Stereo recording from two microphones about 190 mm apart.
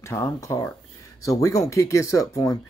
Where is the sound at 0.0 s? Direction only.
15° left (ahead or behind).